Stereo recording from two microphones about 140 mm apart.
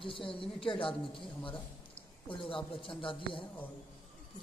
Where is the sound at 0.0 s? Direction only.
40° left (ahead or behind).